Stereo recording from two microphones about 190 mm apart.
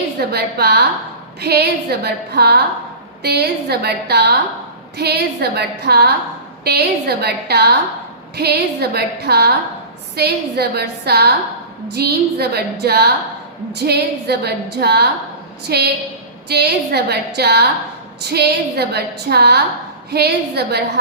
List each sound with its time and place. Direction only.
0.2 s a woman's voice: 55° right (ahead or behind)